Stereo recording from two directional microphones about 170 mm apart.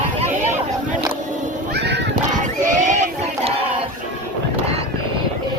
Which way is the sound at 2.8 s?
45° right (ahead or behind).